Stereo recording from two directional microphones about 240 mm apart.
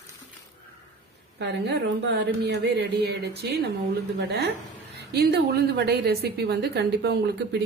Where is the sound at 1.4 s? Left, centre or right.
Right.